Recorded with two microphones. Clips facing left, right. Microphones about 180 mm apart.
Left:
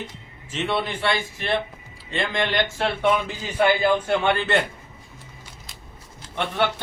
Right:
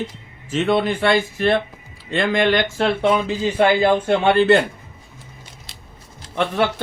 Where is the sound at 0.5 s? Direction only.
50° right (ahead or behind).